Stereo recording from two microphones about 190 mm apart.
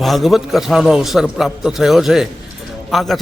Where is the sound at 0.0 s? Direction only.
Centre (ahead or behind).